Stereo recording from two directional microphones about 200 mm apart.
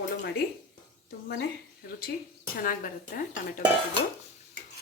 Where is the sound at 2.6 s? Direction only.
45° left (ahead or behind).